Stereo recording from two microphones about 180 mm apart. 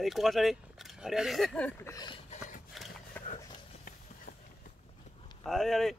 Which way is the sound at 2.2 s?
45° left (ahead or behind).